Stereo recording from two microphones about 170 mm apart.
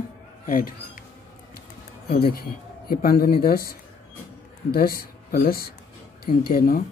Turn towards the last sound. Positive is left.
turn(degrees=60)  # may be behind; listen again after turning